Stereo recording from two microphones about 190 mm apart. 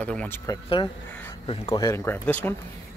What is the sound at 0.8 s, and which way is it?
Speech, 25° left (ahead or behind).